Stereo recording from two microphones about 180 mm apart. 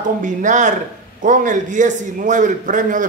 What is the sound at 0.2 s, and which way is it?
A man's voice, 45° right (ahead or behind).